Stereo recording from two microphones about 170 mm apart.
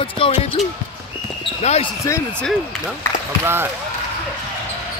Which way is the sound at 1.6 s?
40° left (ahead or behind).